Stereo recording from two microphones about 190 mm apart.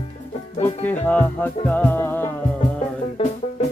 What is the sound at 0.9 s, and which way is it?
Music, 10° left (ahead or behind).